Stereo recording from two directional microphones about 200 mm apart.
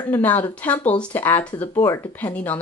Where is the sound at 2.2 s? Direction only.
10° left (ahead or behind).